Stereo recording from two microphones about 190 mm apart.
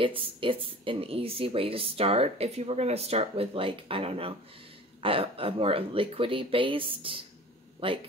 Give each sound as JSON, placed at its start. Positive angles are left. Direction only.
{"t": 0.0, "sound": "speech", "side_deg": -25}